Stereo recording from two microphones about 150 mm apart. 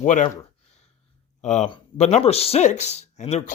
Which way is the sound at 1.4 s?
50° left (ahead or behind).